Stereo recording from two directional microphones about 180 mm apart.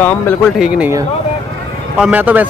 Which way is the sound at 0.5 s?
5° right (ahead or behind).